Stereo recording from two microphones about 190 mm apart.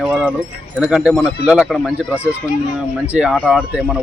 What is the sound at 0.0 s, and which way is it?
Keys jangling, 5° right (ahead or behind).